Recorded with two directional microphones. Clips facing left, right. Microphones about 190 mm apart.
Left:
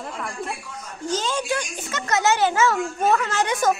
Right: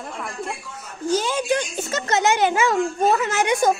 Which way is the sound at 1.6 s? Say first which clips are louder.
Right 4 dB; 30° right (ahead or behind).